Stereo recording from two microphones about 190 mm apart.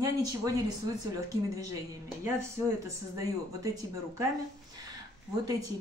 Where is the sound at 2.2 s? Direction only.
15° right (ahead or behind).